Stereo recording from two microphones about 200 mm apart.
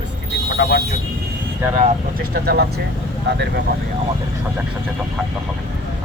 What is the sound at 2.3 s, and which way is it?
Speech, 50° right (ahead or behind).